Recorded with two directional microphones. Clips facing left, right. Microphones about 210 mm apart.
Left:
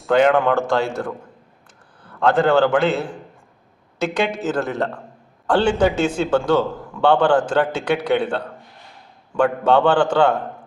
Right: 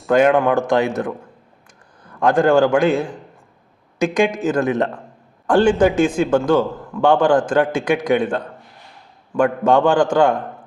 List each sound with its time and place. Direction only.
0.0 s speech: 10° right (ahead or behind)
2.1 s a man's voice: 15° right (ahead or behind)